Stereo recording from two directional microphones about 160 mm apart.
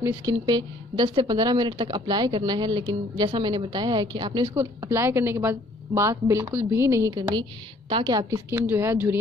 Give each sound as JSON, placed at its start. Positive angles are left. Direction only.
{"t": 0.0, "sound": "a woman's voice", "side_deg": -20}